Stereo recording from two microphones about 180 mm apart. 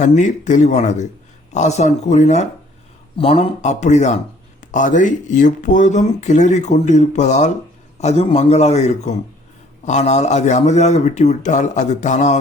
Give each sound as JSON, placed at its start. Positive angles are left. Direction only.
{"t": 0.0, "sound": "speech", "side_deg": 45}